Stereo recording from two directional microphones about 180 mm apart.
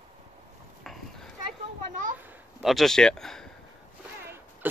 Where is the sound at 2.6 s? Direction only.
Centre (ahead or behind).